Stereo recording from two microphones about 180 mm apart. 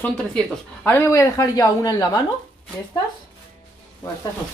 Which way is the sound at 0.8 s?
15° left (ahead or behind).